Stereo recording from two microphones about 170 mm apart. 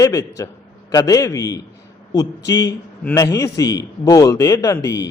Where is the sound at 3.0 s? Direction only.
10° left (ahead or behind).